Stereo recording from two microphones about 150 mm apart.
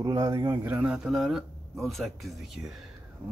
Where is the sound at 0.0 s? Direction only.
20° right (ahead or behind).